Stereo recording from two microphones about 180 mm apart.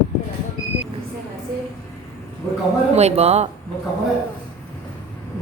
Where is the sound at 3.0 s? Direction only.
35° right (ahead or behind).